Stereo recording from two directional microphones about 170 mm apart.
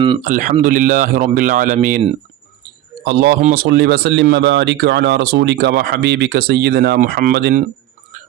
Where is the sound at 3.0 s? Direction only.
70° right (ahead or behind).